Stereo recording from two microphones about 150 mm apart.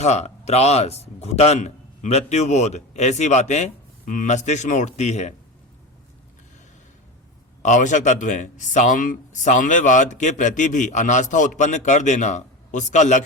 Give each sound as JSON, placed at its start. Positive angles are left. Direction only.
{"t": 0.0, "sound": "speech", "side_deg": 50}
{"t": 7.6, "sound": "speech", "side_deg": 55}